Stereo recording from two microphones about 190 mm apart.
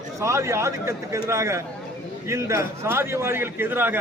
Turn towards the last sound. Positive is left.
turn(degrees=-10)  # may be behind; listen again after turning